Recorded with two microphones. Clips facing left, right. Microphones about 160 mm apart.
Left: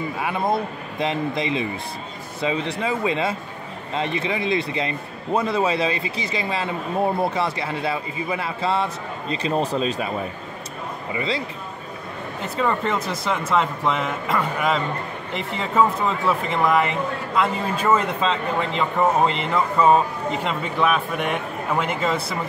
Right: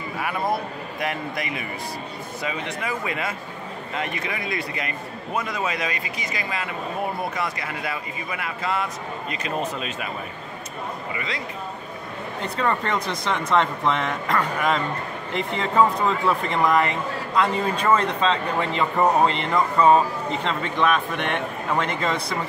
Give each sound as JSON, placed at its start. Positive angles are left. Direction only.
{"t": 0.2, "sound": "a man's voice", "side_deg": 25}
{"t": 11.1, "sound": "a man's voice", "side_deg": 30}
{"t": 12.4, "sound": "a man's voice", "side_deg": 5}